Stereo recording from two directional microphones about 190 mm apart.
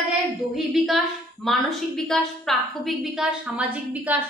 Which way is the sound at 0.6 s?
Centre (ahead or behind).